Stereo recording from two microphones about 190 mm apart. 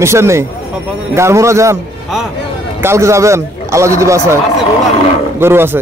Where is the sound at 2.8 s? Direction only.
15° right (ahead or behind).